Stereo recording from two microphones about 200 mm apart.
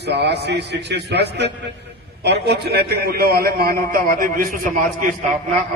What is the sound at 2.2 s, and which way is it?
A man's voice, 55° right (ahead or behind).